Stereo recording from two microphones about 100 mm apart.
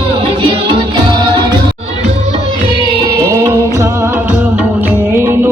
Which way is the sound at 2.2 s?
70° right (ahead or behind).